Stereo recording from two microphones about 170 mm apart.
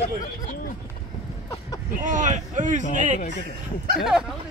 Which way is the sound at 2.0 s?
50° right (ahead or behind).